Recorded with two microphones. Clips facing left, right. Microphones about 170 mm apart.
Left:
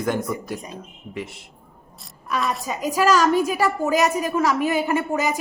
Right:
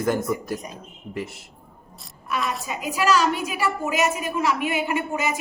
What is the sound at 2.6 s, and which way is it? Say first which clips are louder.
A woman's voice: left 4 dB; 40° left (ahead or behind).